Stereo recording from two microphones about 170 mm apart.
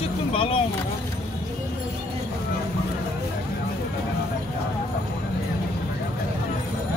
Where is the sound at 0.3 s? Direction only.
30° left (ahead or behind).